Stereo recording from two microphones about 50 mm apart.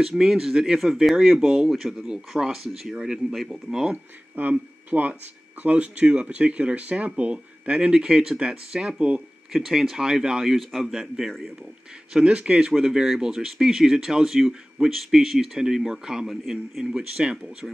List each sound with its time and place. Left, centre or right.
0.2 s speech: centre
3.9 s speech: right
9.5 s speech: centre
10.4 s speech: centre
12.1 s speech: centre
12.7 s speech: centre